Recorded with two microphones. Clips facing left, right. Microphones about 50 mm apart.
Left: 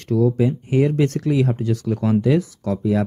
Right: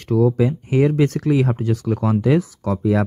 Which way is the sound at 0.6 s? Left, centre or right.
Right.